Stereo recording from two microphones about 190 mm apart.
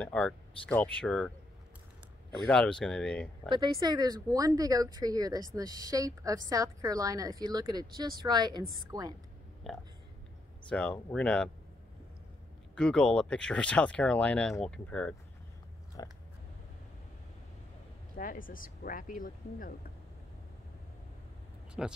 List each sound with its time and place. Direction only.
0.0 s speech: 5° left (ahead or behind)
2.4 s speech: 5° left (ahead or behind)
3.4 s a woman's voice: 25° right (ahead or behind)
9.6 s speech: centre (ahead or behind)
12.7 s speech: 5° left (ahead or behind)
16.0 s biting: 20° left (ahead or behind)
18.1 s speech: 45° left (ahead or behind)
21.8 s speech: centre (ahead or behind)